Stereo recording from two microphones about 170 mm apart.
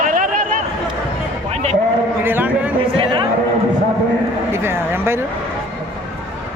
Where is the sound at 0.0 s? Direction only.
50° right (ahead or behind).